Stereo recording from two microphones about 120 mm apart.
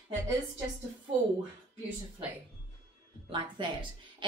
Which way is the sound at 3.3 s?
40° right (ahead or behind).